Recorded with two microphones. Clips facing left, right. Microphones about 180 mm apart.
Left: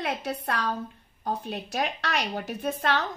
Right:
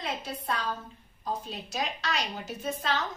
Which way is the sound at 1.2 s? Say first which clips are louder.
Left 4 dB; 65° left (ahead or behind).